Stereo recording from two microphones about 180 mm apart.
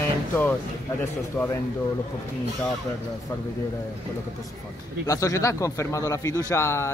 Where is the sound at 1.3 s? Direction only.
15° left (ahead or behind).